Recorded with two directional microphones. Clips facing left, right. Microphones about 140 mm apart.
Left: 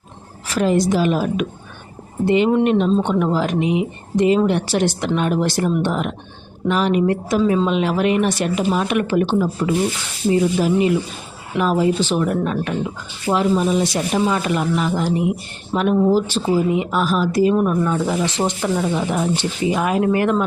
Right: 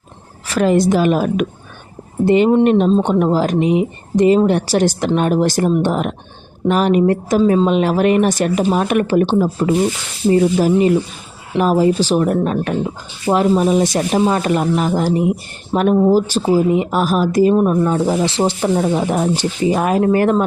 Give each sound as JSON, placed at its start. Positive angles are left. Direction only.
{"t": 0.5, "sound": "a woman's voice", "side_deg": -60}
{"t": 17.5, "sound": "speech", "side_deg": -35}